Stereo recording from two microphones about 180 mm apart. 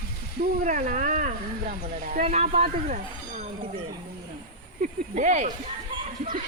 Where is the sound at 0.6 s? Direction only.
45° right (ahead or behind).